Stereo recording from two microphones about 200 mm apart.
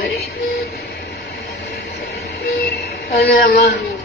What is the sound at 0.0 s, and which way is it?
Music, 55° left (ahead or behind).